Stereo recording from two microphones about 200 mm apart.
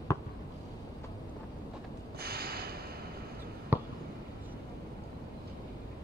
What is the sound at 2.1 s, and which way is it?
Snort, 50° right (ahead or behind).